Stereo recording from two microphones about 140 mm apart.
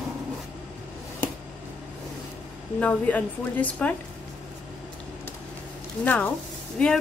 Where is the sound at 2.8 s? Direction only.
10° left (ahead or behind).